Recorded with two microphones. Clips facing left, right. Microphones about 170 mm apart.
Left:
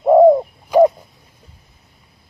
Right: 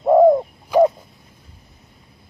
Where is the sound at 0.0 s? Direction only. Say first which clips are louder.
Left 3 dB; 5° left (ahead or behind).